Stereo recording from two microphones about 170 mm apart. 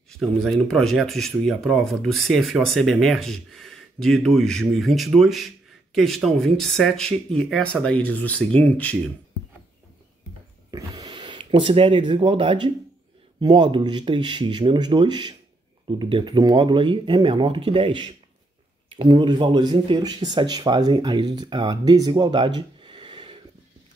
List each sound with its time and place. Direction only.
0.1 s speech: 5° left (ahead or behind)
10.7 s a sound: 25° right (ahead or behind)
13.4 s speech: 30° right (ahead or behind)